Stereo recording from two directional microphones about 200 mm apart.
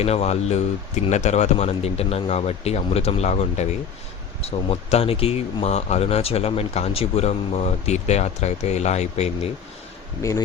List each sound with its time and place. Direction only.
0.0 s speech: 30° left (ahead or behind)
10.2 s speech: 15° left (ahead or behind)